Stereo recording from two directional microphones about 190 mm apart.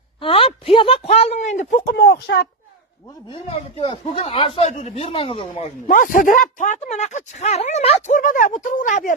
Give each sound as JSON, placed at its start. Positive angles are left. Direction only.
{"t": 0.2, "sound": "speech", "side_deg": 30}
{"t": 3.3, "sound": "speech", "side_deg": 25}
{"t": 5.9, "sound": "speech", "side_deg": 45}